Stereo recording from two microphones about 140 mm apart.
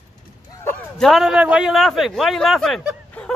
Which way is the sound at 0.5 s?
15° left (ahead or behind).